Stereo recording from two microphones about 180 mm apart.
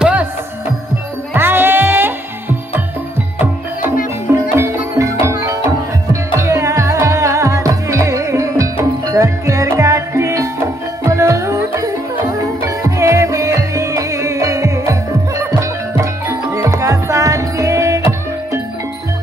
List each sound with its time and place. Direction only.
0.0 s music: 10° right (ahead or behind)
1.3 s music: 10° right (ahead or behind)
4.6 s music: 15° right (ahead or behind)